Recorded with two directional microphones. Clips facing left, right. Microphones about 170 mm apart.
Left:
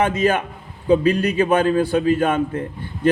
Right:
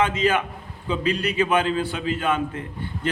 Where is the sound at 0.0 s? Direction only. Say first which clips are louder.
Left 3 dB; 45° left (ahead or behind).